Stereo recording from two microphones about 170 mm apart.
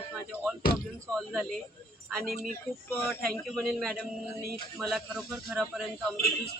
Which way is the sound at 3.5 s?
Centre (ahead or behind).